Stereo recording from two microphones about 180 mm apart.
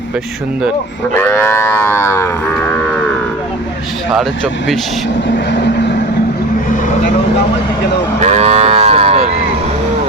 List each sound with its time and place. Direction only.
1.1 s livestock: 15° left (ahead or behind)
8.2 s cattle: 40° right (ahead or behind)